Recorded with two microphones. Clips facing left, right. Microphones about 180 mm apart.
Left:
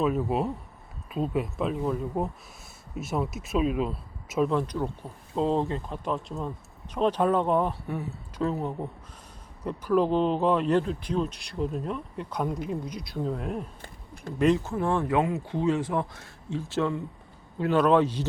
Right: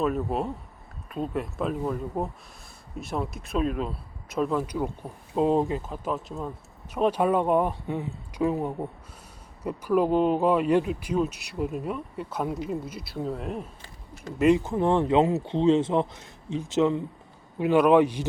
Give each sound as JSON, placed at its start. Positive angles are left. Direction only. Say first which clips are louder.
{"t": 0.0, "sound": "speech", "louder": "left 1 dB", "side_deg": 0}
{"t": 14.3, "sound": "speech", "louder": "right 2 dB", "side_deg": -10}